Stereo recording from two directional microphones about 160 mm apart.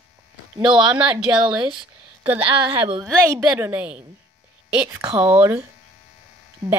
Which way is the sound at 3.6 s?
10° right (ahead or behind).